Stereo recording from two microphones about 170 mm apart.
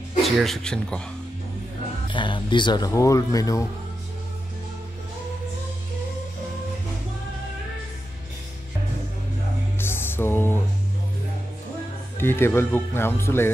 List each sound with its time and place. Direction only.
0.2 s a man's voice: centre (ahead or behind)
2.0 s speech: 30° left (ahead or behind)
9.8 s music: 15° left (ahead or behind)
12.2 s speech: 15° left (ahead or behind)